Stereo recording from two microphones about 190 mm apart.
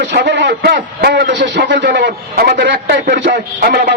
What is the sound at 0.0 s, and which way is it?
A man's voice, 65° right (ahead or behind).